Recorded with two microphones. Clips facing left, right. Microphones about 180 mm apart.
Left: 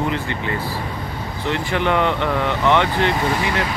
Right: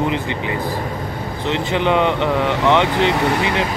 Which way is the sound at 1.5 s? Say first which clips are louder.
Right 2 dB; 20° right (ahead or behind).